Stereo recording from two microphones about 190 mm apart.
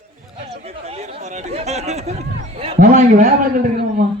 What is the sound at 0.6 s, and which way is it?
A man's voice, 35° right (ahead or behind).